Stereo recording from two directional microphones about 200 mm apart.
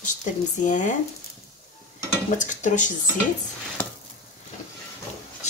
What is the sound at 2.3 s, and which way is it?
Speech, 40° left (ahead or behind).